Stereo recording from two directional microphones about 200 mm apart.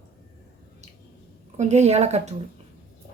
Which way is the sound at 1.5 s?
35° right (ahead or behind).